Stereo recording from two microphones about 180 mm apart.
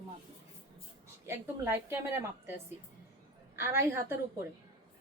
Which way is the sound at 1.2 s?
15° right (ahead or behind).